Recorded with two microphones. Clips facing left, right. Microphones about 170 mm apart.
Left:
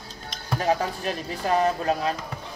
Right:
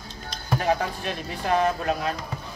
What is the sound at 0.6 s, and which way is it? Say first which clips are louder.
Speech: left 1 dB; 40° left (ahead or behind).